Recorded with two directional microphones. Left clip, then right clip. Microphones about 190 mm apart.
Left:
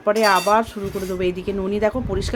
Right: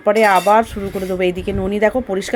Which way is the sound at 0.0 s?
15° right (ahead or behind).